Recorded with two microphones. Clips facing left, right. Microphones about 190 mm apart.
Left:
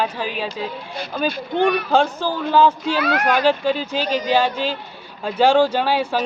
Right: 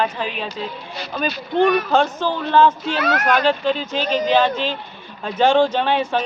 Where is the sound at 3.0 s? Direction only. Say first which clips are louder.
Right 1 dB; 45° right (ahead or behind).